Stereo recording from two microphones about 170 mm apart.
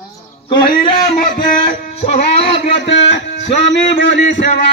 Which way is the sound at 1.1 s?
55° left (ahead or behind).